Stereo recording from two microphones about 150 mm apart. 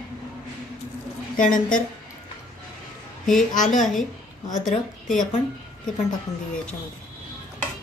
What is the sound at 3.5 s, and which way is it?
Speech, 60° left (ahead or behind).